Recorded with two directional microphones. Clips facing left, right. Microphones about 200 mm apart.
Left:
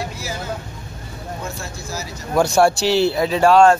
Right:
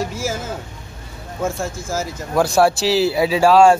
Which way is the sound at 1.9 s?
50° right (ahead or behind).